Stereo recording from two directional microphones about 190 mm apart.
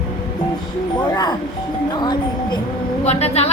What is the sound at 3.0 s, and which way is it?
Speech, 35° left (ahead or behind).